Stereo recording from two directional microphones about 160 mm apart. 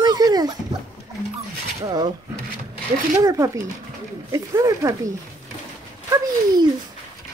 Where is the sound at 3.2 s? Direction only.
20° right (ahead or behind).